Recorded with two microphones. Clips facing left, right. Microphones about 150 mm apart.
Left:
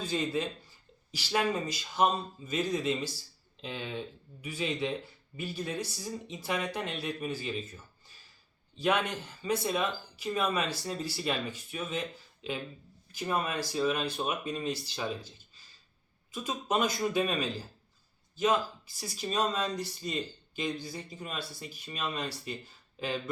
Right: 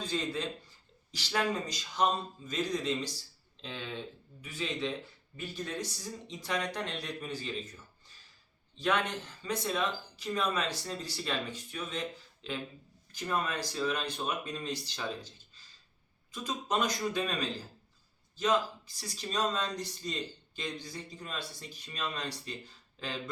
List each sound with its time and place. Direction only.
0.0 s a man's voice: 10° left (ahead or behind)
8.7 s speech: 10° left (ahead or behind)
16.3 s speech: 10° left (ahead or behind)
18.9 s speech: 10° left (ahead or behind)